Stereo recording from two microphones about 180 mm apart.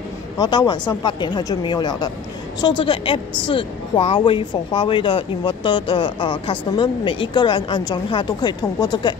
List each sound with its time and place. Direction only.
0.4 s a woman's voice: 25° left (ahead or behind)